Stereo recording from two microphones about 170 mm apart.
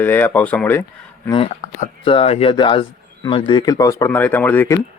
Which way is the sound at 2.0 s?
35° left (ahead or behind).